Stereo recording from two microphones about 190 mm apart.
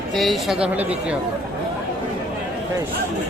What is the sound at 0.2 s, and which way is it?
Speech, centre (ahead or behind).